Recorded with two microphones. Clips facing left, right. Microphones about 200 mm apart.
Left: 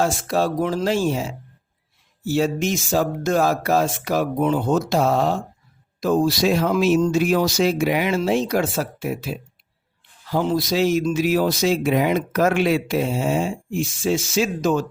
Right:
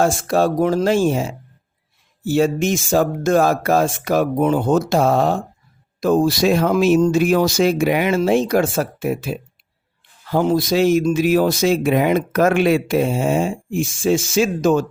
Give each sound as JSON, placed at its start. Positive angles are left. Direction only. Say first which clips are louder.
{"t": 0.0, "sound": "speech", "louder": "right 4 dB", "side_deg": -50}